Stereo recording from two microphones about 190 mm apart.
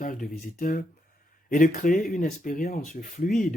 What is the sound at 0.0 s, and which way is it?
Speech, 45° left (ahead or behind).